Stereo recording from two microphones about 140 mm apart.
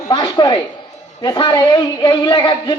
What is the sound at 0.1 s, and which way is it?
A man's voice, 35° left (ahead or behind).